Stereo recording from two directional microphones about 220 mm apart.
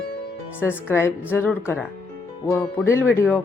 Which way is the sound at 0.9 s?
10° left (ahead or behind).